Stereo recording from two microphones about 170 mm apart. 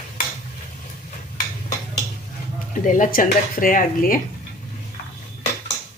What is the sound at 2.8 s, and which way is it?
Speech, 50° left (ahead or behind).